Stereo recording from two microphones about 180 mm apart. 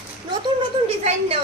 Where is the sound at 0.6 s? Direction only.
30° right (ahead or behind).